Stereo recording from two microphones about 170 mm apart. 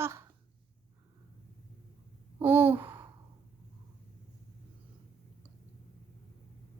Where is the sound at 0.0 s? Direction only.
15° right (ahead or behind).